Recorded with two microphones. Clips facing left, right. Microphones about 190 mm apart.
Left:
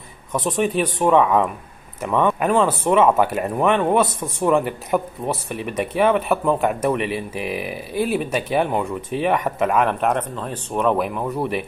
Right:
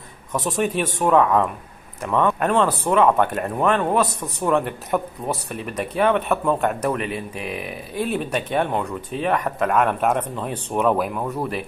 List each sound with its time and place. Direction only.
0.3 s speech: centre (ahead or behind)
10.3 s speech: 15° right (ahead or behind)